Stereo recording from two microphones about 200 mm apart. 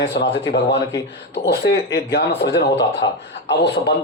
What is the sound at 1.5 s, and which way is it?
A man's voice, 55° left (ahead or behind).